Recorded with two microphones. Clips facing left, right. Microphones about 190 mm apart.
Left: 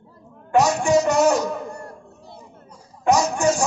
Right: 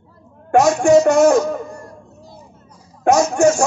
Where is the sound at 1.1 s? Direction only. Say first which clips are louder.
Right 6 dB; 35° left (ahead or behind).